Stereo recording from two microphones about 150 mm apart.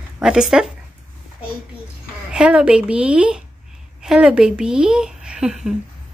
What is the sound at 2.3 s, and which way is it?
A woman's voice, 5° right (ahead or behind).